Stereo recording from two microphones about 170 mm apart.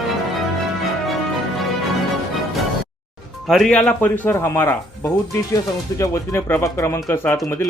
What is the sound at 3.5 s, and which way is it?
Speech, centre (ahead or behind).